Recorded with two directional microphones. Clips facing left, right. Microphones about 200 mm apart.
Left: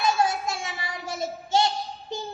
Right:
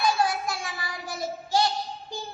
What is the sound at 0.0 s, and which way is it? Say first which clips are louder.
Child singing: left 1 dB; 25° left (ahead or behind).